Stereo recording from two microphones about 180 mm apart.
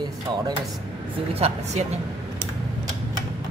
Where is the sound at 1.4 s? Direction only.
35° right (ahead or behind).